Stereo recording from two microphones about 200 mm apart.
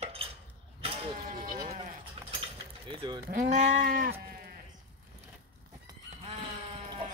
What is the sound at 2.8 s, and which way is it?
Speech, 25° right (ahead or behind).